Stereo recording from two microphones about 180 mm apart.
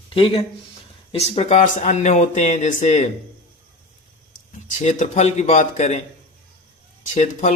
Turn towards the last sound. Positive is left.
turn(degrees=40)  # may be behind; listen again after turning